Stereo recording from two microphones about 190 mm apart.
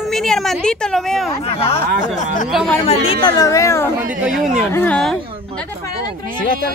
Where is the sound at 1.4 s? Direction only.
30° left (ahead or behind).